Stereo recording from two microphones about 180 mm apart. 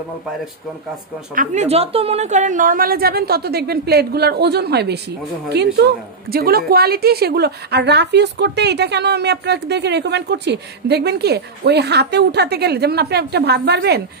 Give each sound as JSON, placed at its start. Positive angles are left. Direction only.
{"t": 1.3, "sound": "a woman's voice", "side_deg": -45}